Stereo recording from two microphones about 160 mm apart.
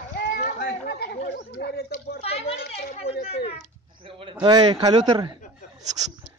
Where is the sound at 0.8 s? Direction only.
75° left (ahead or behind).